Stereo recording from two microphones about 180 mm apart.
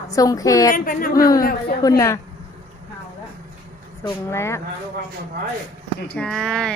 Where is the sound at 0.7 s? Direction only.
50° left (ahead or behind).